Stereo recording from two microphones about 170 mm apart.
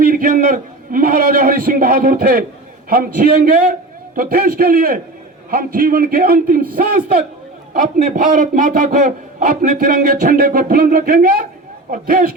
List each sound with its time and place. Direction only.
0.0 s a man's voice: 55° right (ahead or behind)